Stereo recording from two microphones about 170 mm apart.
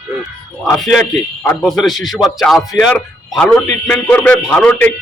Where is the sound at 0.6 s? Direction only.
Centre (ahead or behind).